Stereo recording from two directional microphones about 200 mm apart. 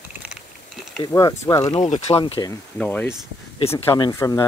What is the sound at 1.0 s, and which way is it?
Speech, 20° left (ahead or behind).